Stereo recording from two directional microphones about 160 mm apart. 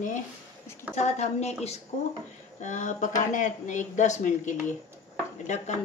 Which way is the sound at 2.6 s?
50° left (ahead or behind).